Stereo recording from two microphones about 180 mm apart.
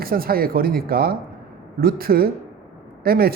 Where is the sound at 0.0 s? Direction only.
55° right (ahead or behind).